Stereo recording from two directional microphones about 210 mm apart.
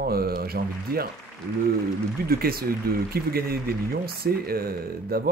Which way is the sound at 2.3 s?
45° right (ahead or behind).